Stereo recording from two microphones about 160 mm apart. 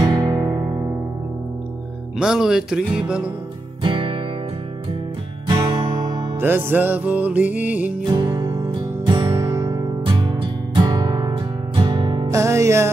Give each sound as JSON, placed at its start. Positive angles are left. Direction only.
{"t": 0.0, "sound": "music", "side_deg": -20}
{"t": 2.1, "sound": "music", "side_deg": -5}
{"t": 3.8, "sound": "music", "side_deg": -30}
{"t": 5.6, "sound": "music", "side_deg": -30}
{"t": 6.3, "sound": "music", "side_deg": -15}
{"t": 8.1, "sound": "music", "side_deg": -25}
{"t": 12.3, "sound": "music", "side_deg": -20}